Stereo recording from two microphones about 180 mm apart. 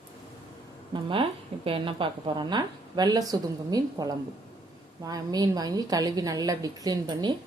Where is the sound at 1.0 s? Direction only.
30° right (ahead or behind).